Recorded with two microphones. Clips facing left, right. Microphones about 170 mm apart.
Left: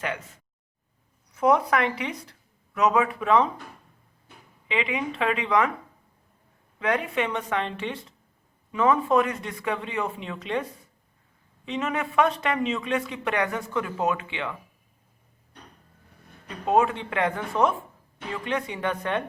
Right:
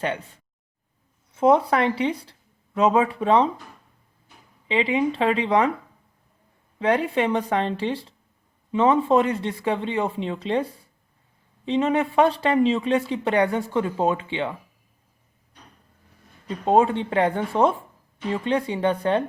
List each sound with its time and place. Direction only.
1.3 s speech: 25° right (ahead or behind)
4.7 s speech: 30° right (ahead or behind)
6.7 s speech: 30° right (ahead or behind)
16.6 s speech: 30° right (ahead or behind)